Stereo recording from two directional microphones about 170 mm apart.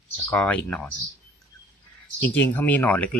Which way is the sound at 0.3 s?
10° left (ahead or behind).